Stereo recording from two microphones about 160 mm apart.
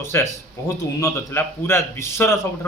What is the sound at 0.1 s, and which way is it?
A man's voice, 15° left (ahead or behind).